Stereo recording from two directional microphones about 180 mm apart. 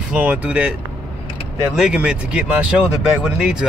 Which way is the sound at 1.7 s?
5° right (ahead or behind).